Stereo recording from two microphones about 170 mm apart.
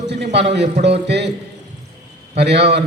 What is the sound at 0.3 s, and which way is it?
Speech, 90° right.